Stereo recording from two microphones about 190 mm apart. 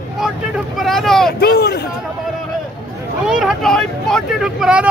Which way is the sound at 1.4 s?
55° left (ahead or behind).